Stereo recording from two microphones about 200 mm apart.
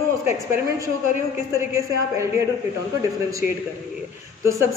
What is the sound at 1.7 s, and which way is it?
Speech, 15° right (ahead or behind).